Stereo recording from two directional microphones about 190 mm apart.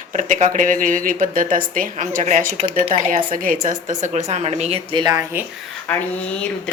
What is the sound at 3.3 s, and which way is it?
A woman's voice, 45° right (ahead or behind).